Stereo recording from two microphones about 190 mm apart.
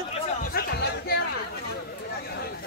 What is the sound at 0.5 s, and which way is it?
Music, 60° left (ahead or behind).